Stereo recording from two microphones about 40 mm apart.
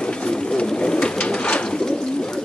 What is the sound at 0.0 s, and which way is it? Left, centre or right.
Bird, left.